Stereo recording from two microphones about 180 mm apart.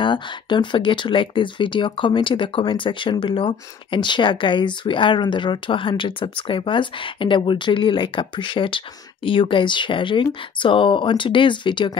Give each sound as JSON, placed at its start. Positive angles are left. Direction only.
{"t": 0.0, "sound": "speech", "side_deg": 25}